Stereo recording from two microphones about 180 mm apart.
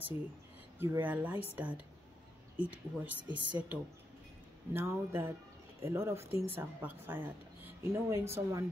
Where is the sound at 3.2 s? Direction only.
25° right (ahead or behind).